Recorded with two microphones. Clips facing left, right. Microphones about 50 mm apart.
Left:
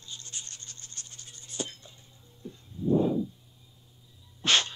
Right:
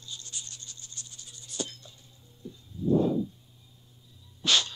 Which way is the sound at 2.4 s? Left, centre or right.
Left.